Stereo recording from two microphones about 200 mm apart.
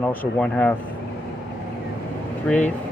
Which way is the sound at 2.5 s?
5° left (ahead or behind).